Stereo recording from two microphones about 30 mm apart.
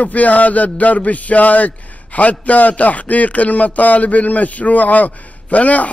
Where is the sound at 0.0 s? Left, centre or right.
Left.